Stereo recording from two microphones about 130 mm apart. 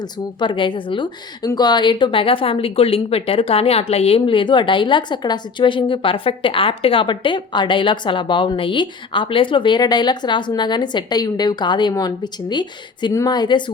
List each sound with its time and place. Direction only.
0.0 s speech: 35° left (ahead or behind)